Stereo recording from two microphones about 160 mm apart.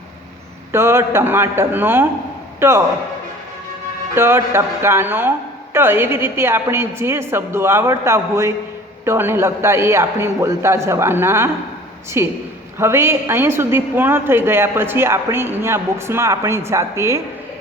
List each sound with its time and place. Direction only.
0.7 s a woman's voice: 15° right (ahead or behind)
4.1 s a woman's voice: 15° right (ahead or behind)